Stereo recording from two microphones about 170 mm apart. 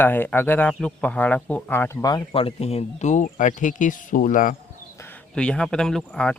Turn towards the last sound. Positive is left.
turn(degrees=5)  # may be behind; listen again after turning